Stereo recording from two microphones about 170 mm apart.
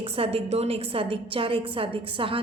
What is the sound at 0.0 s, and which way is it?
A woman's voice, 35° right (ahead or behind).